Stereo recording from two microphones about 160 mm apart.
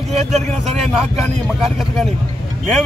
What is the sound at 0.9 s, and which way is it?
A man's voice, centre (ahead or behind).